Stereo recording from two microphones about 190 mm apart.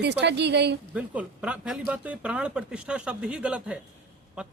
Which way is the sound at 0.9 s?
5° right (ahead or behind).